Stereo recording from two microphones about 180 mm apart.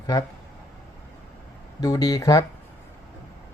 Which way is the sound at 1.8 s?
20° left (ahead or behind).